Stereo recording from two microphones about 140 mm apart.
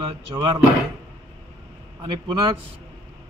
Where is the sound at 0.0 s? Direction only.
35° right (ahead or behind).